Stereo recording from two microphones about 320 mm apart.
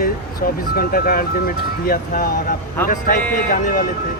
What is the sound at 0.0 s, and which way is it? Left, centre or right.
Speech, left.